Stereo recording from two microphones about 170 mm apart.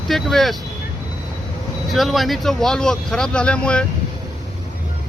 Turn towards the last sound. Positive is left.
turn(degrees=5)  # may be behind; listen again after turning